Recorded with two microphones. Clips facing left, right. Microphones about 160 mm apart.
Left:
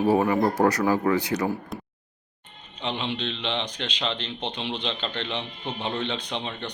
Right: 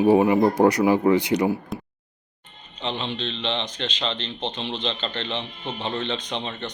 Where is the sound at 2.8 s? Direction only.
10° left (ahead or behind).